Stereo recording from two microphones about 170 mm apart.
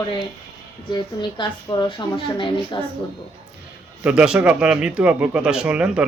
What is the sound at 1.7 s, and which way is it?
A woman's voice, 30° left (ahead or behind).